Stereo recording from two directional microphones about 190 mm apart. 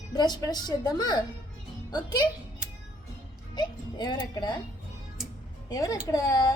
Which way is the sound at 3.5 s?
20° left (ahead or behind).